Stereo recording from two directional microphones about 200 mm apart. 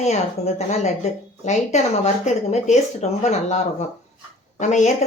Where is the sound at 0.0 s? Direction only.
35° left (ahead or behind).